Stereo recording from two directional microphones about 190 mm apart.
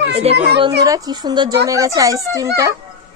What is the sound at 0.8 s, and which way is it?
A child's voice, 20° right (ahead or behind).